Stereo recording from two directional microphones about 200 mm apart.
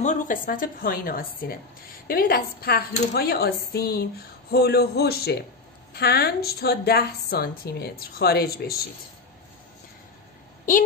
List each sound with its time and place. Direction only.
0.0 s a woman's voice: 40° left (ahead or behind)